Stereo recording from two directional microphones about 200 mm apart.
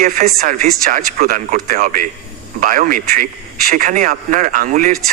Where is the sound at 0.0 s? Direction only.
45° right (ahead or behind).